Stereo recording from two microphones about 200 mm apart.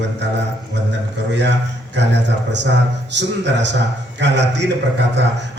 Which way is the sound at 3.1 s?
60° right (ahead or behind).